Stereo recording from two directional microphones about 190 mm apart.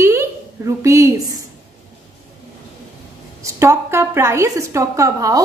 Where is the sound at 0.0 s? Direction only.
15° right (ahead or behind).